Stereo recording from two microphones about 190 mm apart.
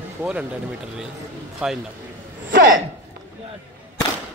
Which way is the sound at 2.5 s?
50° right (ahead or behind).